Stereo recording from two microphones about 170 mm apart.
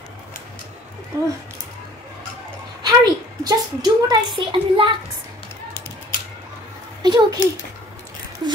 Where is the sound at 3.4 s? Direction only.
25° right (ahead or behind).